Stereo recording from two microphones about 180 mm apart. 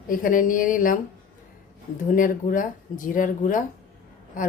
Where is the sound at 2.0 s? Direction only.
50° left (ahead or behind).